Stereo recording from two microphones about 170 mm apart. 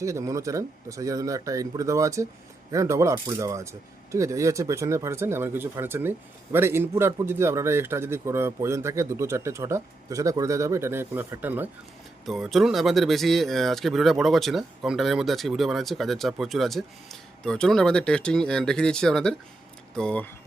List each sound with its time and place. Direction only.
0.0 s a man's voice: 20° right (ahead or behind)
12.2 s speech: centre (ahead or behind)